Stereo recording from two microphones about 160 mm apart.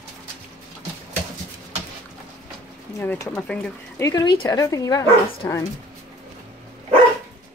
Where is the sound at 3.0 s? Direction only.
10° left (ahead or behind).